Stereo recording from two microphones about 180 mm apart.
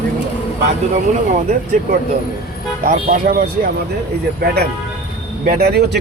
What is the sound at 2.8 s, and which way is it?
Speech, 45° right (ahead or behind).